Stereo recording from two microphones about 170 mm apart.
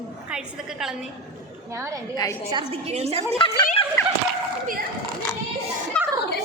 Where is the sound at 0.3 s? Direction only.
5° right (ahead or behind).